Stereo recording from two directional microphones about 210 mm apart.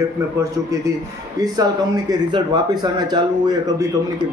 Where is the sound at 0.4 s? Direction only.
15° right (ahead or behind).